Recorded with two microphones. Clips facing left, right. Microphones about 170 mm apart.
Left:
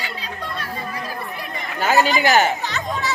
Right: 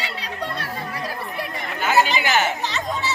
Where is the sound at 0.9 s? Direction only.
70° right (ahead or behind).